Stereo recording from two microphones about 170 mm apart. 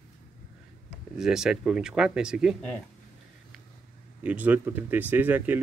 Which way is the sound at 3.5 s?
Centre (ahead or behind).